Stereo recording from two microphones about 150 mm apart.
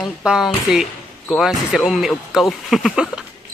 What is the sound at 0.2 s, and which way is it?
Speech, 5° right (ahead or behind).